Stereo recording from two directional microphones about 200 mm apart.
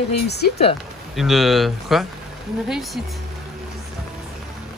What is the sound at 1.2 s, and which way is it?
Speech, centre (ahead or behind).